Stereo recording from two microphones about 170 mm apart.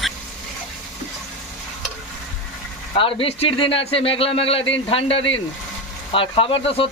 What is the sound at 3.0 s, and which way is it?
Speech, 30° left (ahead or behind).